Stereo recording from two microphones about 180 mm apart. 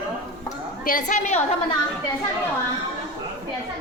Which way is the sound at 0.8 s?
45° left (ahead or behind).